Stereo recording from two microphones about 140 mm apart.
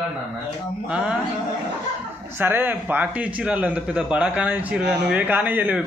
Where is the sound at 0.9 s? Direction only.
10° right (ahead or behind).